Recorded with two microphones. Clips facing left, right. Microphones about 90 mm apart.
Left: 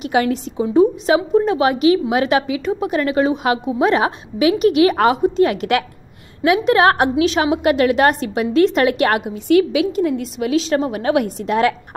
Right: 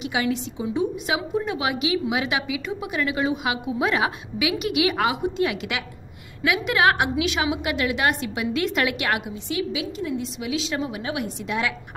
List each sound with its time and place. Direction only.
0.0 s a woman's voice: 45° left (ahead or behind)
9.3 s a woman's voice: 65° left (ahead or behind); by 11.7 s 45° left (ahead or behind)